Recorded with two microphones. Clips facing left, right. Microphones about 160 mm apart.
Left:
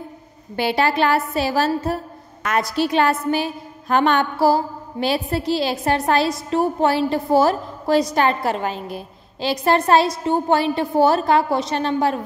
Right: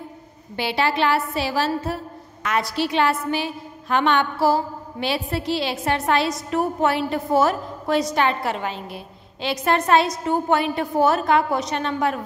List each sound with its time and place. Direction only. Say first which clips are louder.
0.6 s a woman's voice: left 3 dB; 45° left (ahead or behind)